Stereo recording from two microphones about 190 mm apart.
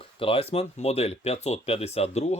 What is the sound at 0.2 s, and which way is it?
Speech, 30° left (ahead or behind).